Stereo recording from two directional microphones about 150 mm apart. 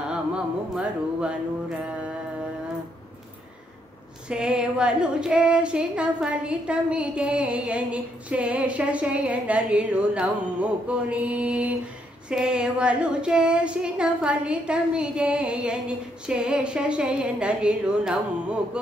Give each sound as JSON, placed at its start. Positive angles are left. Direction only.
{"t": 0.1, "sound": "music", "side_deg": -5}
{"t": 4.3, "sound": "female singing", "side_deg": -5}